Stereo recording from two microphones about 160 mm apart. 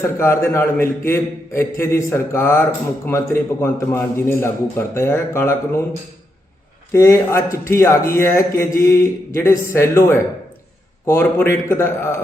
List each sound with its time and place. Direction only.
0.2 s a man's voice: 15° left (ahead or behind)
6.9 s a man's voice: 15° left (ahead or behind)